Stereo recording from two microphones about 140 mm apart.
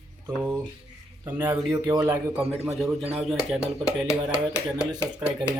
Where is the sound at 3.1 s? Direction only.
Centre (ahead or behind).